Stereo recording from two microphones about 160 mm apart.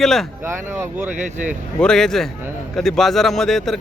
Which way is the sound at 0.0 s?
Centre (ahead or behind).